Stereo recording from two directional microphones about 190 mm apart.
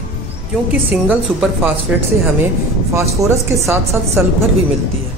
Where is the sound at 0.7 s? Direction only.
10° right (ahead or behind).